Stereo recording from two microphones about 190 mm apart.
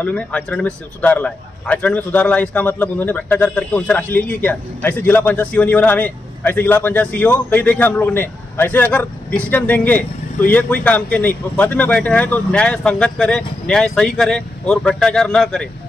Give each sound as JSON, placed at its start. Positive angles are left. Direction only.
{"t": 0.0, "sound": "a man's voice", "side_deg": 5}